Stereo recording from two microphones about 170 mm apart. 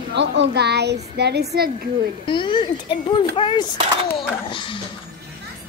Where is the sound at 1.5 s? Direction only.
65° right (ahead or behind).